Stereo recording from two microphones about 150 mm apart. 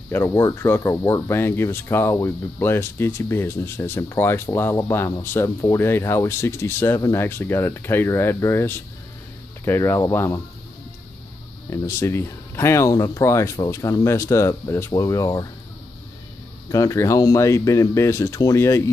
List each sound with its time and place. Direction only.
0.1 s speech: 15° left (ahead or behind)
11.7 s speech: 20° left (ahead or behind)
16.6 s speech: 20° left (ahead or behind)